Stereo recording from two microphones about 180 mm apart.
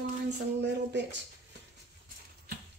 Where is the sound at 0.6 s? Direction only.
75° right (ahead or behind).